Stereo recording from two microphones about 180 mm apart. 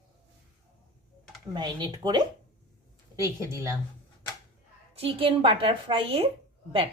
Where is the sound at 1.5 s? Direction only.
25° right (ahead or behind).